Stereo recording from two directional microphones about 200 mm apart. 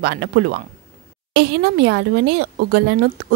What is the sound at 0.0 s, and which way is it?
A woman's voice, 50° right (ahead or behind).